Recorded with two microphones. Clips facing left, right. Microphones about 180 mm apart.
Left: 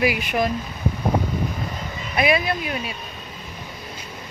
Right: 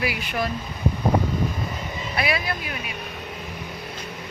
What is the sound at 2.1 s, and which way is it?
Speech, 20° left (ahead or behind).